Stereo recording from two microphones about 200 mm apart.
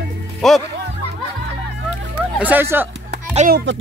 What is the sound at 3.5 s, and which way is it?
Speech, 50° right (ahead or behind).